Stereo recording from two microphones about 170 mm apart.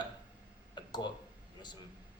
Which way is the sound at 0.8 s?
25° left (ahead or behind).